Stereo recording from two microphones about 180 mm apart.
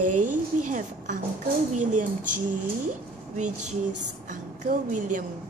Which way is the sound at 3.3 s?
40° right (ahead or behind).